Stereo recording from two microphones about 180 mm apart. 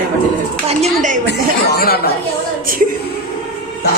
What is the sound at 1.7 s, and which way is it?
Speech, 60° left (ahead or behind).